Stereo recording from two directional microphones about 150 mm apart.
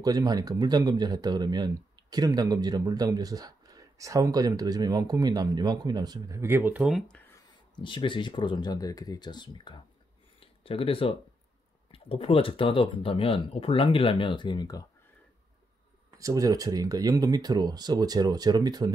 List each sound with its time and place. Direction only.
0.0 s speech: 25° right (ahead or behind); by 7.2 s centre (ahead or behind)
7.7 s speech: 35° left (ahead or behind)
16.2 s speech: 25° right (ahead or behind)